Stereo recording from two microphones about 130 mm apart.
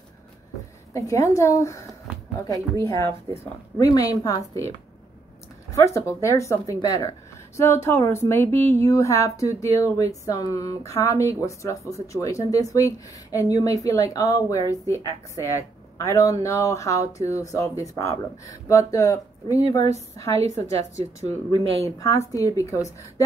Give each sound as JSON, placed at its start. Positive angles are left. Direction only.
{"t": 0.9, "sound": "speech", "side_deg": 25}
{"t": 2.8, "sound": "speech", "side_deg": 20}
{"t": 5.9, "sound": "speech", "side_deg": 25}
{"t": 21.3, "sound": "speech", "side_deg": -50}
{"t": 21.8, "sound": "speech", "side_deg": 25}